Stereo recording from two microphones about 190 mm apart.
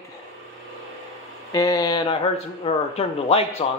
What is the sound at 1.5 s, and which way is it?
Speech, 20° left (ahead or behind).